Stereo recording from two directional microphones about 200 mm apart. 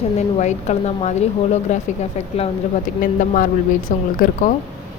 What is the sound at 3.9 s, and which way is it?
Speech, 40° left (ahead or behind).